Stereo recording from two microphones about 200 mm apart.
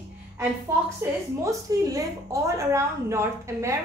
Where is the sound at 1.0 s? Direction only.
15° right (ahead or behind).